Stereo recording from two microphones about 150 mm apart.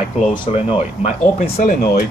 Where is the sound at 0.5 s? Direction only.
40° left (ahead or behind).